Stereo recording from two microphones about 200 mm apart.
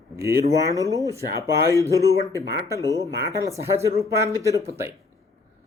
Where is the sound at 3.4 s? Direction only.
15° right (ahead or behind).